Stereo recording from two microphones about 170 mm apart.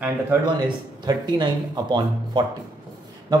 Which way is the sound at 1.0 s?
25° right (ahead or behind).